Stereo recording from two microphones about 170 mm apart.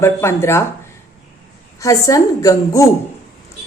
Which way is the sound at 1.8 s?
20° left (ahead or behind).